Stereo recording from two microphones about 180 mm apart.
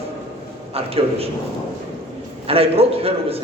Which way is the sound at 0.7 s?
35° right (ahead or behind).